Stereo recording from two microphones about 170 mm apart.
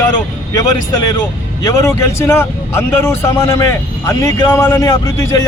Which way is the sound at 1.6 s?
20° left (ahead or behind).